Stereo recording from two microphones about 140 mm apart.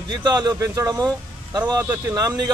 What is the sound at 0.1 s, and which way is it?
Speech, 25° right (ahead or behind).